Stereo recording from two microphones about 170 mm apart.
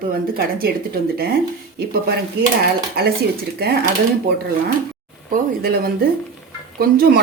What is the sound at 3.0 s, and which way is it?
Speech, 65° right (ahead or behind).